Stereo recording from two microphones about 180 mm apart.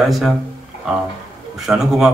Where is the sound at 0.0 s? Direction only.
Centre (ahead or behind).